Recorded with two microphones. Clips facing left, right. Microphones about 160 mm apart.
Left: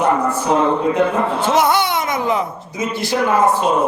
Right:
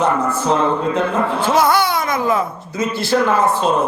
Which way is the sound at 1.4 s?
20° left (ahead or behind).